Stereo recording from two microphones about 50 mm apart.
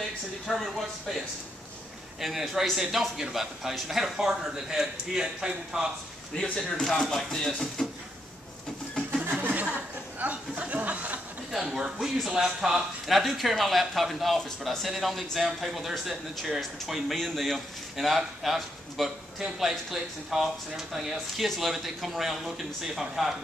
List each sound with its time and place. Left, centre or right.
0.5 s a man's voice: centre
6.4 s speech: centre
6.9 s speech: centre
10.1 s a sound: right
11.5 s speech: centre